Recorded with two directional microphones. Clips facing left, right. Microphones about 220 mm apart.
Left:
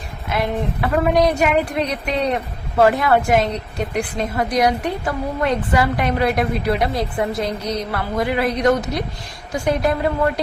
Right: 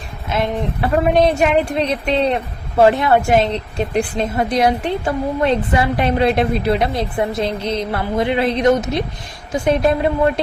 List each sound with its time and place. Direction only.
0.3 s a woman's voice: 25° right (ahead or behind)